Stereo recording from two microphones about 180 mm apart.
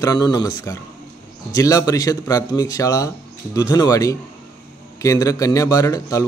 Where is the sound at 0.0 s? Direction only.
20° left (ahead or behind).